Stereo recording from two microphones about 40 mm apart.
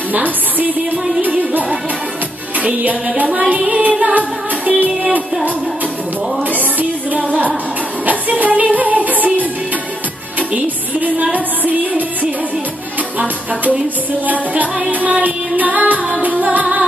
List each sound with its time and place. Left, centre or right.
0.1 s a woman's voice: right
2.6 s music: right
6.5 s music: right
10.5 s music: right
14.2 s music: right